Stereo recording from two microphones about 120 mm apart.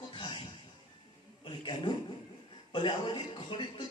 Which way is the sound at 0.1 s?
40° left (ahead or behind).